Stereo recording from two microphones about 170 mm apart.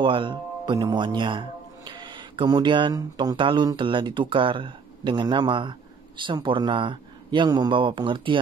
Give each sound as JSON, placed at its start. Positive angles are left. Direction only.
{"t": 0.0, "sound": "speech", "side_deg": -30}